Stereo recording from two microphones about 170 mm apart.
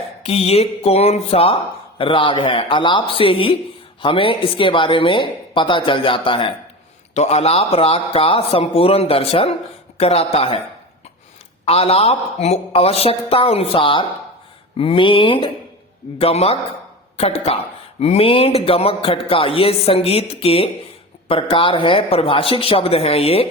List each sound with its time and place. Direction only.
0.2 s a man's voice: 35° left (ahead or behind)
11.6 s a man's voice: 35° left (ahead or behind)